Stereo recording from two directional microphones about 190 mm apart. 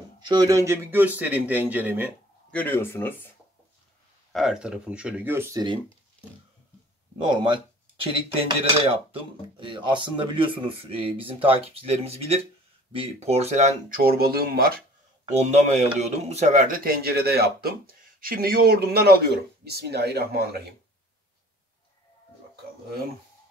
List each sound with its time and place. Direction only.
0.2 s a man's voice: 20° right (ahead or behind)
2.5 s speech: 10° left (ahead or behind)
4.3 s a man's voice: centre (ahead or behind); by 5.8 s 20° right (ahead or behind)
7.2 s speech: 25° right (ahead or behind); by 14.7 s 50° right (ahead or behind)
15.4 s a man's voice: 35° right (ahead or behind); by 20.6 s 55° right (ahead or behind)